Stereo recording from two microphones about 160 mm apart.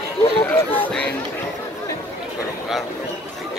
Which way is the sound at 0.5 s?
10° left (ahead or behind).